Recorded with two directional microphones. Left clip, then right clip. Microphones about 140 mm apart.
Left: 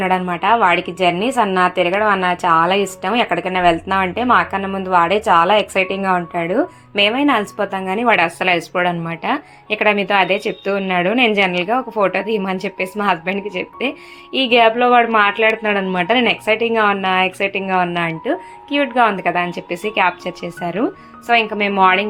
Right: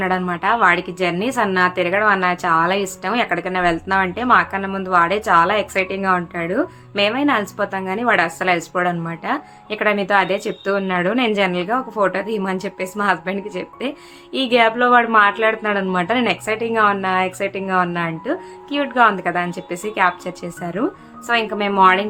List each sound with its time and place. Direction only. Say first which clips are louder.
0.0 s a woman's voice: left 3 dB; 10° left (ahead or behind)